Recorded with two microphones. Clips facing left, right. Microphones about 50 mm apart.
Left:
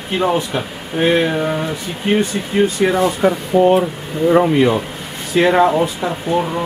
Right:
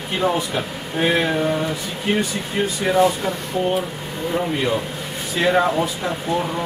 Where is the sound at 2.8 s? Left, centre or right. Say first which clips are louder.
Left 5 dB; left.